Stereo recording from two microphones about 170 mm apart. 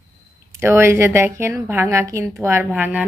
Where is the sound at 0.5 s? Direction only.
15° right (ahead or behind).